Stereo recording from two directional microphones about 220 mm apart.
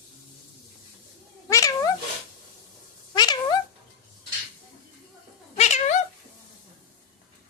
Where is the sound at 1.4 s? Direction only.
15° left (ahead or behind).